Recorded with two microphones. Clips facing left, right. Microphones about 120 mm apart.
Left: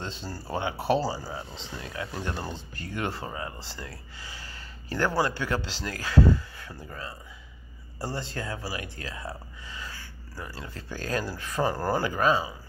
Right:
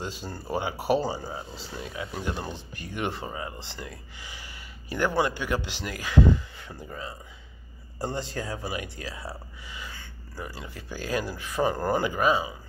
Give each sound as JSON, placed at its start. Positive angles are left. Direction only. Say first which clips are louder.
{"t": 0.0, "sound": "speech", "louder": "right 1 dB", "side_deg": -10}